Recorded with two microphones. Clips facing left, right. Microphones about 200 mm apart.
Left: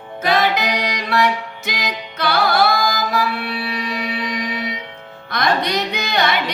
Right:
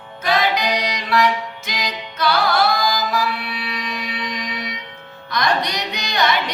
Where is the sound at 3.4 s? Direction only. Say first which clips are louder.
Left 4 dB; 45° left (ahead or behind).